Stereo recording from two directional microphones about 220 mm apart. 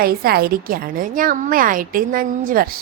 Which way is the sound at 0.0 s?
45° right (ahead or behind).